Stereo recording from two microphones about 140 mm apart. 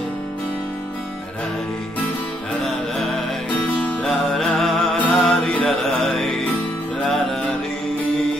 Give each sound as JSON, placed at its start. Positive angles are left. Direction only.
{"t": 3.6, "sound": "music", "side_deg": 10}